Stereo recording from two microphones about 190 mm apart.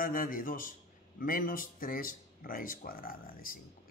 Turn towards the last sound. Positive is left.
turn(degrees=50)  # may be behind; listen again after turning